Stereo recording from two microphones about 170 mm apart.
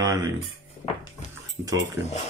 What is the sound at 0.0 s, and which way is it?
Music, 20° right (ahead or behind).